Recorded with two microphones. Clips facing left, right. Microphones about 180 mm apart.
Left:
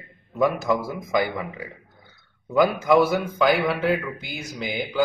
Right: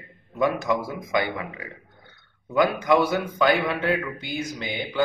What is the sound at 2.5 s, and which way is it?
Speech, centre (ahead or behind).